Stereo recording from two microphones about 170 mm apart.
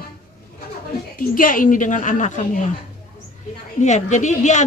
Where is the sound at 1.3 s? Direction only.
55° left (ahead or behind).